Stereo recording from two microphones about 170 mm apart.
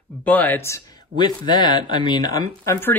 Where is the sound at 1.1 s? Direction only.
25° left (ahead or behind).